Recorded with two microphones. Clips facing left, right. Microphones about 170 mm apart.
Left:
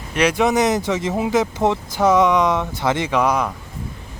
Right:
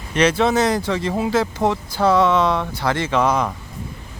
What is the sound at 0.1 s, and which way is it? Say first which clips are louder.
Speech: even; 10° left (ahead or behind).